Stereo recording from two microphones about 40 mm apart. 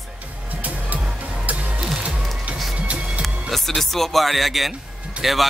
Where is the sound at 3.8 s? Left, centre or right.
Centre.